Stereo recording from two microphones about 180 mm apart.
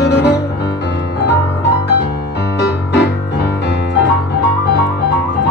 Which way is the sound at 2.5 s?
70° left (ahead or behind).